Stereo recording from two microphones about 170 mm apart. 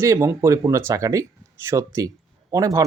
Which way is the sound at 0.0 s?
15° right (ahead or behind).